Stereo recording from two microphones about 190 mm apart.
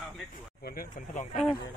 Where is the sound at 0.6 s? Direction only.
50° left (ahead or behind).